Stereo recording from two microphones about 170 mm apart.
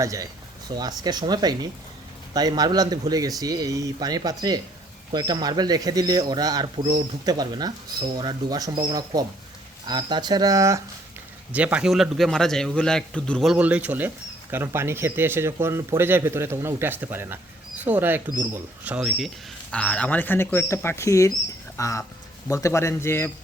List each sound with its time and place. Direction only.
0.0 s speech: 20° right (ahead or behind)
11.5 s a man's voice: 10° right (ahead or behind); by 23.3 s 15° left (ahead or behind)